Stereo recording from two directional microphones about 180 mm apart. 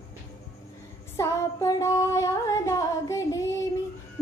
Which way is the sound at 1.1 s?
15° left (ahead or behind).